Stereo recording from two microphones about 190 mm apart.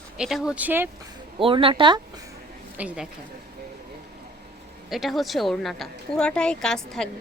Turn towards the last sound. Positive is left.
turn(degrees=5)  # may be behind; listen again after turning